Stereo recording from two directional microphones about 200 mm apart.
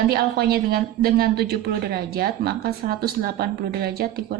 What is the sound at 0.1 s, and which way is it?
A woman's voice, 50° right (ahead or behind).